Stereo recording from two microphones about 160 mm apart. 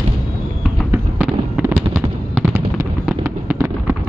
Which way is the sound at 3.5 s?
20° right (ahead or behind).